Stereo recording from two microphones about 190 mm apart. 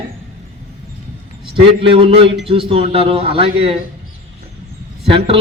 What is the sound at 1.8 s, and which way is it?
A man's voice, 30° right (ahead or behind).